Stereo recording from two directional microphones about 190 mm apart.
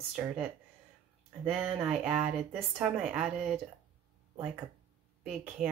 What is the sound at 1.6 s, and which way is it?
Speech, 5° right (ahead or behind).